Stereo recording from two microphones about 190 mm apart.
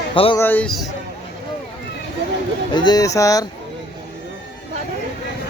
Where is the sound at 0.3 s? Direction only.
10° left (ahead or behind).